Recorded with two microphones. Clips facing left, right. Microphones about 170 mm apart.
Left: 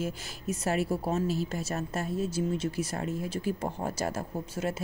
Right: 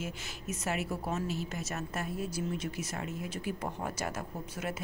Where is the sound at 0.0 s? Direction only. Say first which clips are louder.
Left 6 dB; 35° left (ahead or behind).